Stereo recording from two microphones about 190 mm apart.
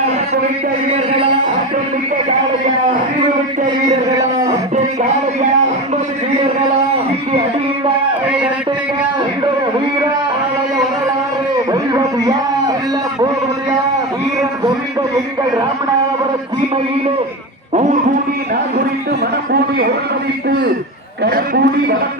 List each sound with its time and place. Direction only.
0.9 s a man's voice: 30° right (ahead or behind)
11.7 s a sound: 20° right (ahead or behind)
17.7 s speech: 35° right (ahead or behind)
21.2 s a man's voice: 50° right (ahead or behind)